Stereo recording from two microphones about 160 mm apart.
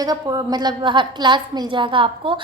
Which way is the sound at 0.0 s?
25° right (ahead or behind).